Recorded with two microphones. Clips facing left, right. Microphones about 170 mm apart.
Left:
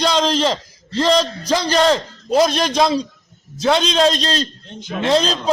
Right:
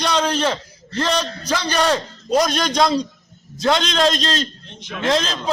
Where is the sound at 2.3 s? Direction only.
25° left (ahead or behind).